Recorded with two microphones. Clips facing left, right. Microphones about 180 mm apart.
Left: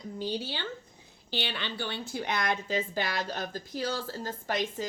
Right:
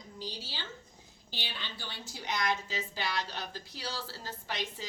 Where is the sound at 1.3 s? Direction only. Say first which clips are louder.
Left 9 dB; 70° left (ahead or behind).